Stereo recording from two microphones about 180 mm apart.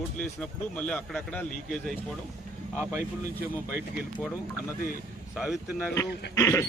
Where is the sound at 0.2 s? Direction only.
5° left (ahead or behind).